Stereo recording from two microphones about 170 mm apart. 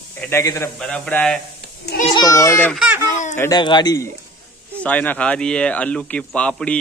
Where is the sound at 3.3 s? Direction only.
20° left (ahead or behind).